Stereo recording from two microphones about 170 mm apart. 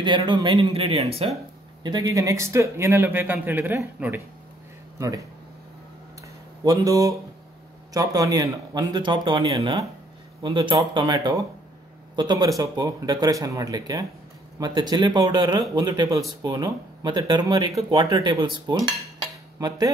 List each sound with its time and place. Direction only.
0.0 s speech: 25° right (ahead or behind)
6.6 s speech: 20° right (ahead or behind)